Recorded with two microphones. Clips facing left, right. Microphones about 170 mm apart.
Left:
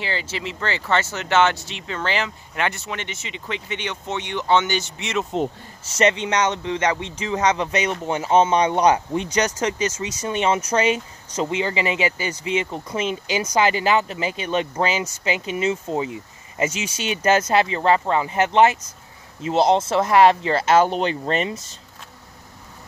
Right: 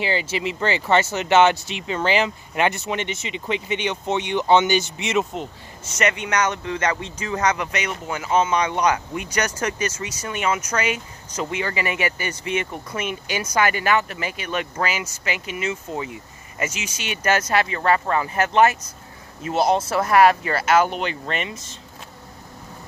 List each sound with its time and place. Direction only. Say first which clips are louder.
0.0 s speech: right 4 dB; 15° right (ahead or behind)
5.9 s speech: left 3 dB; 25° left (ahead or behind)